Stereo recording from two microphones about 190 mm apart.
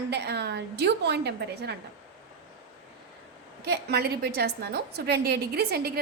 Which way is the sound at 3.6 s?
55° right (ahead or behind).